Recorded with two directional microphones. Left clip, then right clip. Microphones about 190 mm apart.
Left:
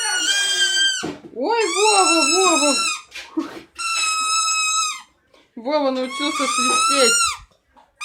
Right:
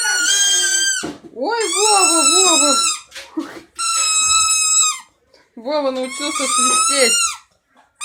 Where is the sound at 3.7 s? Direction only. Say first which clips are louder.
Right 2 dB; centre (ahead or behind).